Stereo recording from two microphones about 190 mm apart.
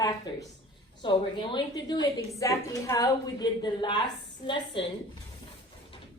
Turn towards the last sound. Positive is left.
turn(degrees=25)  # may be behind; listen again after turning